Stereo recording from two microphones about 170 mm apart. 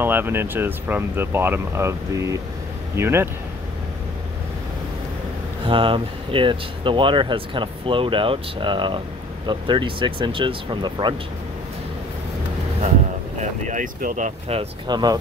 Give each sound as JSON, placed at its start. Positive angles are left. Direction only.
{"t": 0.0, "sound": "speech", "side_deg": -10}
{"t": 5.7, "sound": "speech", "side_deg": -30}
{"t": 13.4, "sound": "speech", "side_deg": -50}
{"t": 14.9, "sound": "speech", "side_deg": -25}